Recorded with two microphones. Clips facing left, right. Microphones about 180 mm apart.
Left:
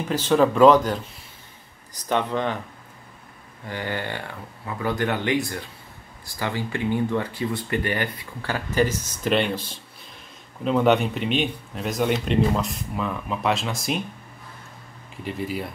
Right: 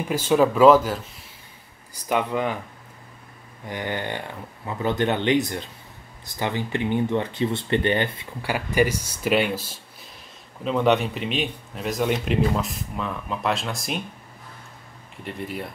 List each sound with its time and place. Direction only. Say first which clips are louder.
0.1 s speech: even; 10° right (ahead or behind)
2.0 s speech: even; 10° right (ahead or behind)
3.6 s speech: right 1 dB; 20° right (ahead or behind)
8.4 s speech: right 1 dB; 10° right (ahead or behind)
15.2 s speech: left 3 dB; centre (ahead or behind)